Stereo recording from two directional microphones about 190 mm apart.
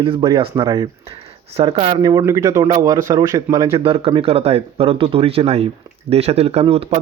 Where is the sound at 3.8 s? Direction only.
30° right (ahead or behind).